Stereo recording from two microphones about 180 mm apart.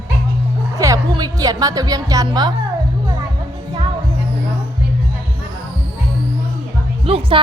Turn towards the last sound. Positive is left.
turn(degrees=-30)  # may be behind; listen again after turning